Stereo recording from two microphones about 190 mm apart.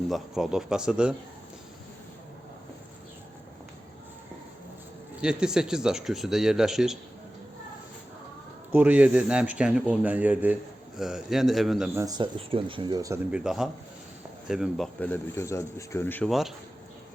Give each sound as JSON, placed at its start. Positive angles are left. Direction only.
{"t": 0.1, "sound": "speech", "side_deg": 0}
{"t": 5.2, "sound": "speech", "side_deg": -5}
{"t": 8.7, "sound": "speech", "side_deg": -5}
{"t": 11.9, "sound": "speech", "side_deg": -20}
{"t": 13.3, "sound": "speech", "side_deg": -5}
{"t": 14.9, "sound": "speech", "side_deg": 10}